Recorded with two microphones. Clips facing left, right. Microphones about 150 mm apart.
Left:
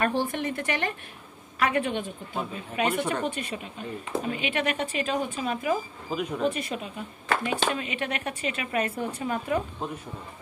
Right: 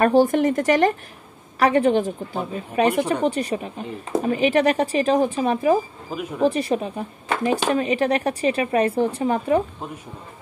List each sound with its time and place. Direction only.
0.0 s speech: 40° right (ahead or behind)
6.0 s speech: 5° right (ahead or behind)
6.4 s speech: 35° right (ahead or behind)